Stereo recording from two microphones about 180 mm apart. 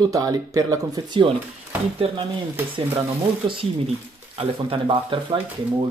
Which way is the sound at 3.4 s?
30° right (ahead or behind).